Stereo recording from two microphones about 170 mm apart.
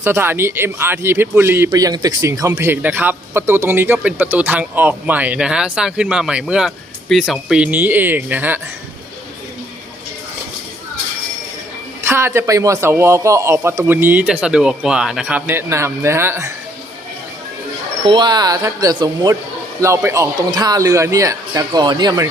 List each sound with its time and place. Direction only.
0.0 s speech: 15° right (ahead or behind)
12.0 s speech: 15° right (ahead or behind)
18.0 s speech: 25° right (ahead or behind)